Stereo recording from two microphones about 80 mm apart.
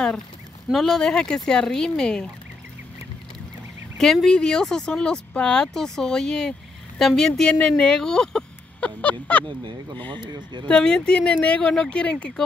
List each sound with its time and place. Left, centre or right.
0.7 s speech: centre
4.0 s a woman's voice: centre
9.9 s speech: left
10.2 s speech: right
10.7 s speech: centre